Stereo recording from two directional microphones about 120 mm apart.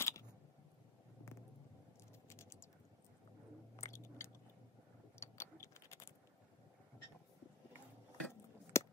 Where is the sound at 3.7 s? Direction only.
25° left (ahead or behind).